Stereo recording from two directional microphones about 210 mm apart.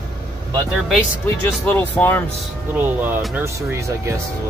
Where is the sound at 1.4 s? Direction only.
10° left (ahead or behind).